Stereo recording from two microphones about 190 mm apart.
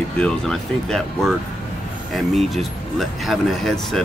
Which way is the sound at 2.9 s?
Centre (ahead or behind).